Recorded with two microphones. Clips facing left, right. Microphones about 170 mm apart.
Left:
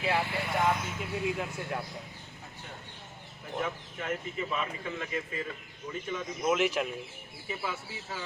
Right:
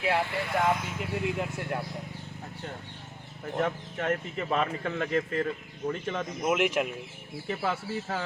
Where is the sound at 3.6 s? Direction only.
65° right (ahead or behind).